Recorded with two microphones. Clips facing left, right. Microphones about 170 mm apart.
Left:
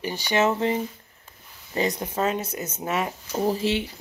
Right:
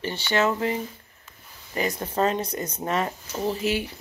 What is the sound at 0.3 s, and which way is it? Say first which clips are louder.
Speech: left 2 dB; 20° left (ahead or behind).